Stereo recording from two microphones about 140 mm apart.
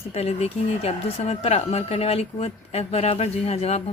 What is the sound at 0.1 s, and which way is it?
Speech, 50° left (ahead or behind).